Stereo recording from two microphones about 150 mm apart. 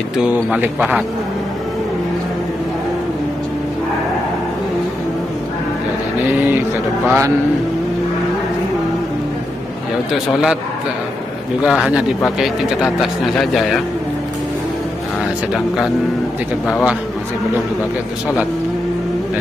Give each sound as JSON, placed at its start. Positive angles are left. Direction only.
{"t": 0.2, "sound": "a man's voice", "side_deg": -5}
{"t": 7.1, "sound": "a man's voice", "side_deg": -20}
{"t": 11.6, "sound": "a man's voice", "side_deg": -5}
{"t": 16.6, "sound": "a man's voice", "side_deg": -5}